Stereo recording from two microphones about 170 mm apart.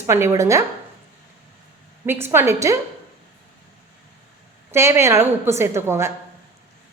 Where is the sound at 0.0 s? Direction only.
15° right (ahead or behind).